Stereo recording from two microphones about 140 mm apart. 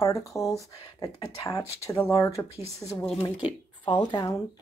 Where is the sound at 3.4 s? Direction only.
30° left (ahead or behind).